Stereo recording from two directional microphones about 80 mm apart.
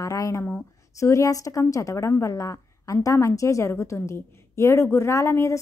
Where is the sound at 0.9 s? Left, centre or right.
Left.